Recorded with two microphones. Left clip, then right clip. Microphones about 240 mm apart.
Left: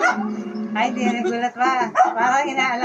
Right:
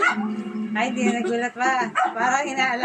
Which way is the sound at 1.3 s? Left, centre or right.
Centre.